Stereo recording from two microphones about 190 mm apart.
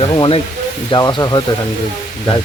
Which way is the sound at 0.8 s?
25° left (ahead or behind).